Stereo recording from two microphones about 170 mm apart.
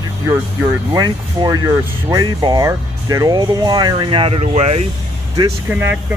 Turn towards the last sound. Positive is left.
turn(degrees=-10)  # may be behind; listen again after turning